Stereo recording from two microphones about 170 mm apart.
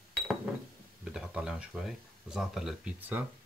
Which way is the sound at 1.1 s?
5° right (ahead or behind).